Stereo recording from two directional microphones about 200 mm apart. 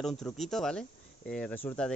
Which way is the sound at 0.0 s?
Centre (ahead or behind).